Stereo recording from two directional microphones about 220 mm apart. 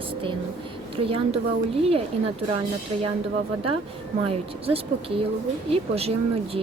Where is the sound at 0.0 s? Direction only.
25° right (ahead or behind).